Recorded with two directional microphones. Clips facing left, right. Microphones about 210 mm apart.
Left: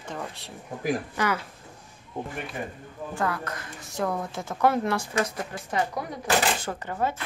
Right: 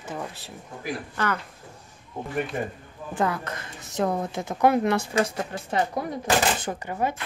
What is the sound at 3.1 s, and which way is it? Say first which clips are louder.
A woman's voice: right 3 dB; 20° right (ahead or behind).